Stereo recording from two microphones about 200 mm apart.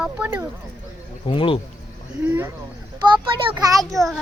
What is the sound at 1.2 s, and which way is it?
Speech, 25° left (ahead or behind).